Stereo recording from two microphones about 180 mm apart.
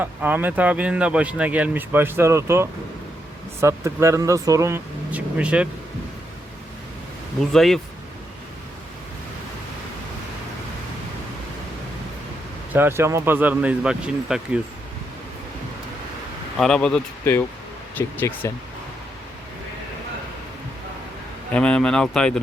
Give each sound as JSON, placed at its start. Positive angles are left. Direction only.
{"t": 0.0, "sound": "speech", "side_deg": -10}
{"t": 7.5, "sound": "speech", "side_deg": 0}
{"t": 12.7, "sound": "speech", "side_deg": -15}
{"t": 16.6, "sound": "speech", "side_deg": 5}
{"t": 21.5, "sound": "speech", "side_deg": 5}